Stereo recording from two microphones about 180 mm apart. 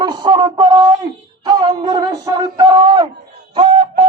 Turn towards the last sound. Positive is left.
turn(degrees=-25)  # may be behind; listen again after turning